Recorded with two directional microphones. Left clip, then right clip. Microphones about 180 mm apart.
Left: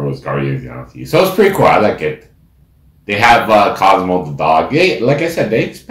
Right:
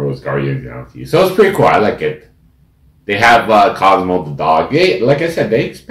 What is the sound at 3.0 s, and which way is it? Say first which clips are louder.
Speech: even; 10° right (ahead or behind).